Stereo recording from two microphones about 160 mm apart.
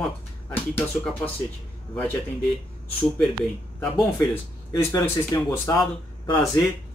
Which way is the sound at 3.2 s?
Centre (ahead or behind).